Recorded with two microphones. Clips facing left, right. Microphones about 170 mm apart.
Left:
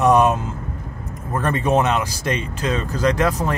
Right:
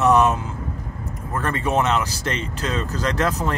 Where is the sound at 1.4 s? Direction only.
20° left (ahead or behind).